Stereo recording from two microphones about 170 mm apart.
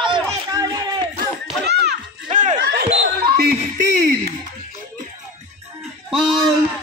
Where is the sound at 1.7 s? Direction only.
75° right (ahead or behind).